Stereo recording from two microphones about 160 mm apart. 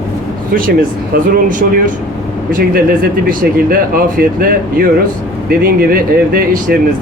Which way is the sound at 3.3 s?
65° right (ahead or behind).